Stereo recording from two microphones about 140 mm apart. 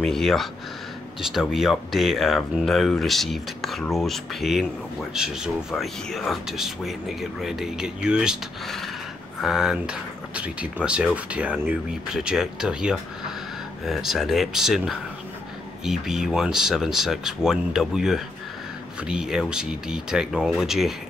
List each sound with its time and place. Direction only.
0.0 s speech: centre (ahead or behind)